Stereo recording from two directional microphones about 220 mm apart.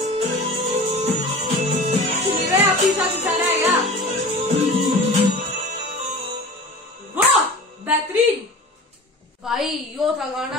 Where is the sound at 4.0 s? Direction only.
30° right (ahead or behind).